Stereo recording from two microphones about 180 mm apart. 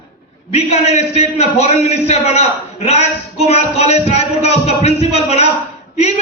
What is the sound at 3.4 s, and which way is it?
Speech, 35° left (ahead or behind).